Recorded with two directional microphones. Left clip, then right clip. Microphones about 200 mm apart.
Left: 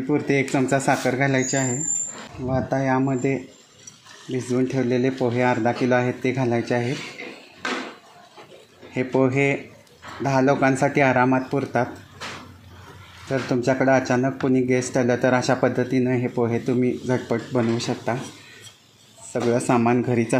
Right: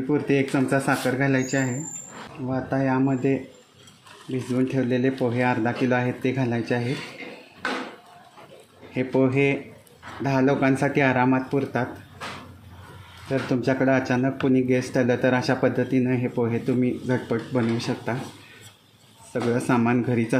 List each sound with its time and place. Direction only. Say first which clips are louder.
0.1 s speech: left 1 dB; 20° left (ahead or behind)
8.9 s speech: left 1 dB; 5° left (ahead or behind)
13.3 s speech: left 2 dB; 10° left (ahead or behind)
19.3 s speech: left 3 dB; 5° left (ahead or behind)